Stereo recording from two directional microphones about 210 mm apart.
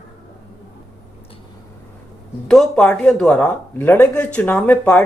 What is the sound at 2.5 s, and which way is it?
Speech, 5° left (ahead or behind).